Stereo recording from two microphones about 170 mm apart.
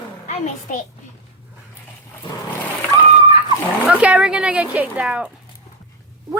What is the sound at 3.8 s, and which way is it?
Speech, 5° right (ahead or behind).